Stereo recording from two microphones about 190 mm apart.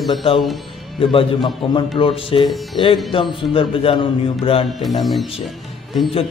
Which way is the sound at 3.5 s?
30° left (ahead or behind).